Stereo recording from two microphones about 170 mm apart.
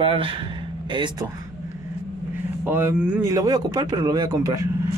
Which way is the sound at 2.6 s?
10° right (ahead or behind).